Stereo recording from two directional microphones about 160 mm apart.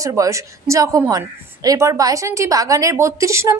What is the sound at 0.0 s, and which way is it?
A woman's voice, 20° right (ahead or behind).